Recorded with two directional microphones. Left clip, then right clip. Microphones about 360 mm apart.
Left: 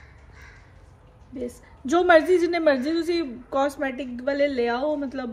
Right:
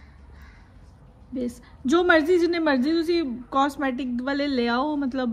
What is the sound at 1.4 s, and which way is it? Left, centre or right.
A woman's voice, centre.